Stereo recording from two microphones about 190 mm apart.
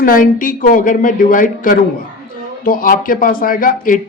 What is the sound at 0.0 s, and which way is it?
A woman's voice, 45° left (ahead or behind).